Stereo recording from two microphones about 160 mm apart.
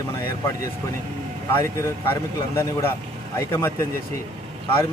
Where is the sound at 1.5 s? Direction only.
20° left (ahead or behind).